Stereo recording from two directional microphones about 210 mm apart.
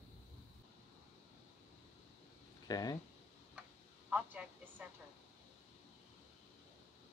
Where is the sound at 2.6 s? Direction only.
20° left (ahead or behind).